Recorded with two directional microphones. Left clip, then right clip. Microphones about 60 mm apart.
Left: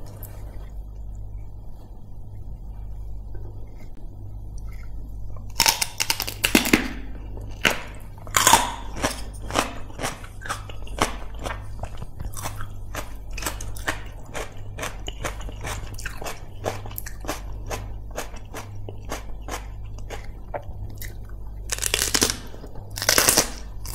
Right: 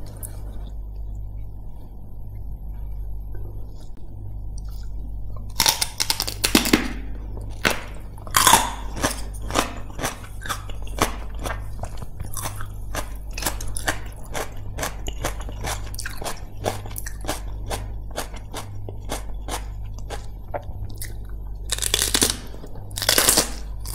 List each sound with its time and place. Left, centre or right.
5.6 s single-lens reflex camera: centre
6.4 s a sound: centre
8.3 s biting: centre
8.7 s cap gun: centre
9.4 s a sound: centre
9.9 s biting: centre
12.9 s biting: right
17.2 s walk: centre
20.1 s biting: centre
21.6 s a sound: centre
22.3 s crunch: centre